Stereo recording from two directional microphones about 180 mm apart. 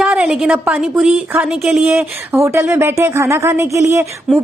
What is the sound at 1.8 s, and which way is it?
Speech, 15° right (ahead or behind).